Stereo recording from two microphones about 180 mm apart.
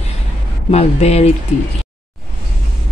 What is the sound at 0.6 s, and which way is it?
Speech, 35° left (ahead or behind).